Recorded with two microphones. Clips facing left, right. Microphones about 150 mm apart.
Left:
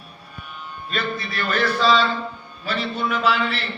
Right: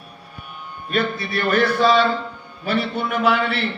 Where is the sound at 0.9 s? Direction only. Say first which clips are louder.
Right 5 dB; 55° right (ahead or behind).